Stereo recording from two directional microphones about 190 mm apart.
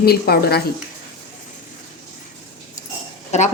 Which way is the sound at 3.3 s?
35° left (ahead or behind).